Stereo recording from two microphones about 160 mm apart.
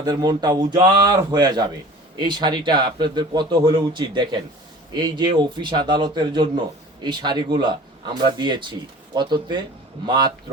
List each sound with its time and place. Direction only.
0.0 s speech: 25° right (ahead or behind)